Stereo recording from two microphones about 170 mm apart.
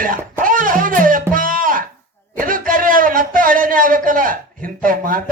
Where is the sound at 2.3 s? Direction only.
55° right (ahead or behind).